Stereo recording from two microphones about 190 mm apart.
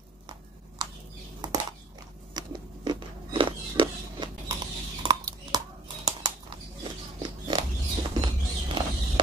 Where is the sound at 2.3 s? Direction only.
25° right (ahead or behind).